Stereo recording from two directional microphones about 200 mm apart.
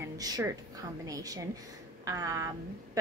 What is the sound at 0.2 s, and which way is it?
A woman's voice, 15° right (ahead or behind).